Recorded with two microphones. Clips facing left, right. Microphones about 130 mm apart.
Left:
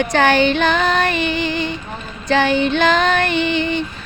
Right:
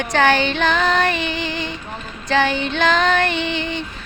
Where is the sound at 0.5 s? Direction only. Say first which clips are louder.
Left 2 dB; 10° left (ahead or behind).